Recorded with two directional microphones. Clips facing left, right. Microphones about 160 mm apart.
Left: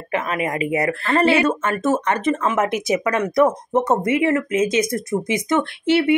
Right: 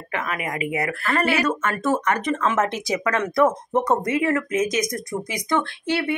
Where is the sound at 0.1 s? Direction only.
25° left (ahead or behind).